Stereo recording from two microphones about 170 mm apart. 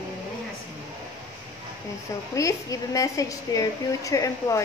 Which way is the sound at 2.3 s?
20° left (ahead or behind).